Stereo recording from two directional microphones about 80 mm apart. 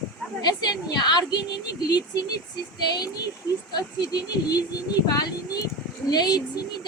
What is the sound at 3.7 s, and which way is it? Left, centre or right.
A woman's voice, left.